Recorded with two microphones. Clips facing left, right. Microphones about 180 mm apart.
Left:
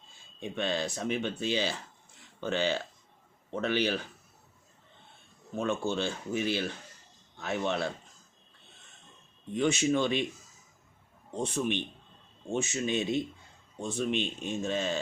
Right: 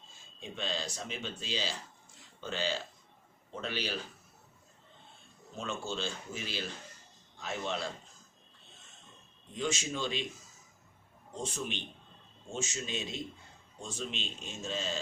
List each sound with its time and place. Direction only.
0.3 s speech: 60° left (ahead or behind)
5.5 s a man's voice: 55° left (ahead or behind)
9.6 s speech: 60° left (ahead or behind)
11.3 s speech: 60° left (ahead or behind)